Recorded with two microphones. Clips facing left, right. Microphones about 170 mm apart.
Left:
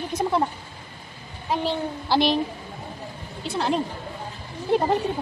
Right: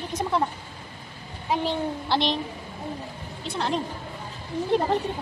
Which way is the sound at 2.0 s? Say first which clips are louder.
Left 5 dB; 5° left (ahead or behind).